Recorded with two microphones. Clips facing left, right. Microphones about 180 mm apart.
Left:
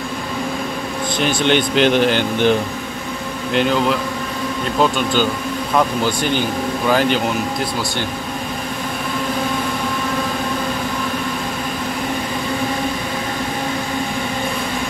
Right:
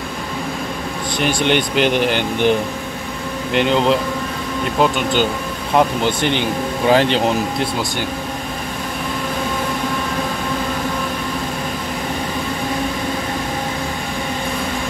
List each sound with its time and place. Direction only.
1.2 s speech: 15° right (ahead or behind)
3.5 s speech: 20° right (ahead or behind)